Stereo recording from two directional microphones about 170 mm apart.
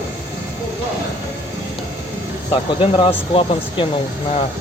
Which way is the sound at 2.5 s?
30° left (ahead or behind).